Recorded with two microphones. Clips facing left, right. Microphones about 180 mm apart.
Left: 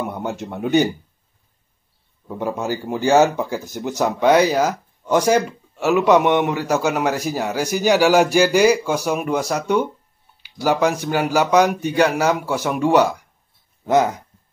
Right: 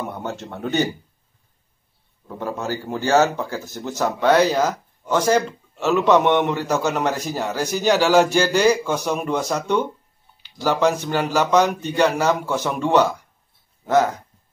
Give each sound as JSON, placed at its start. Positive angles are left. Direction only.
{"t": 0.0, "sound": "a man's voice", "side_deg": 15}
{"t": 2.2, "sound": "a man's voice", "side_deg": 15}